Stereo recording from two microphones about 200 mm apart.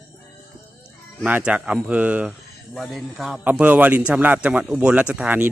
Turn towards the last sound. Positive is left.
turn(degrees=-5)  # may be behind; listen again after turning